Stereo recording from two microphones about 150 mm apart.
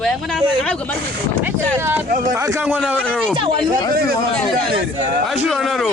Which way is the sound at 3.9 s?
85° right.